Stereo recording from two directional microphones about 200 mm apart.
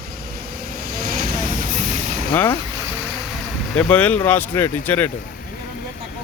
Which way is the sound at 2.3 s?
10° left (ahead or behind).